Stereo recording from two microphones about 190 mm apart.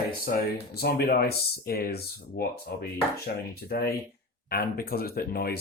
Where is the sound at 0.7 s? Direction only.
55° left (ahead or behind).